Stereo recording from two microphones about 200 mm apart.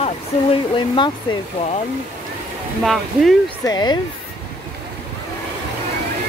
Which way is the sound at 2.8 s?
Centre (ahead or behind).